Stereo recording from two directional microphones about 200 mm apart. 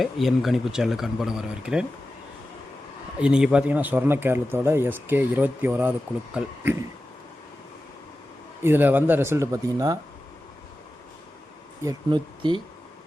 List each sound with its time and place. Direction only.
0.0 s speech: centre (ahead or behind)
3.2 s speech: 5° right (ahead or behind)
8.6 s speech: 10° right (ahead or behind)
11.9 s speech: 25° right (ahead or behind)